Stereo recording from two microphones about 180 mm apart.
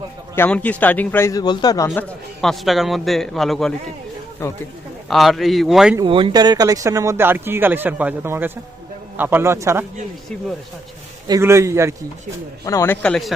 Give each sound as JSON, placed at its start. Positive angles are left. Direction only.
{"t": 0.3, "sound": "a man's voice", "side_deg": 10}
{"t": 2.0, "sound": "a man's voice", "side_deg": 0}
{"t": 4.4, "sound": "a man's voice", "side_deg": 15}
{"t": 5.0, "sound": "a man's voice", "side_deg": 0}
{"t": 6.0, "sound": "speech", "side_deg": -30}
{"t": 11.3, "sound": "speech", "side_deg": -15}
{"t": 12.6, "sound": "a man's voice", "side_deg": 15}